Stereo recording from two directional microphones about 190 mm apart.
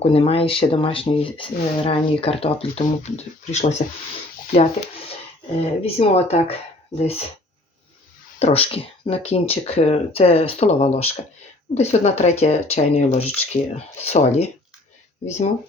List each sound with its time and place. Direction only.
0.0 s speech: 30° left (ahead or behind)
8.4 s speech: 30° left (ahead or behind)